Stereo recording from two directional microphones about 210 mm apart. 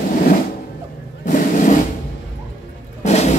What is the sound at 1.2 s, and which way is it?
Vehicle, 35° left (ahead or behind).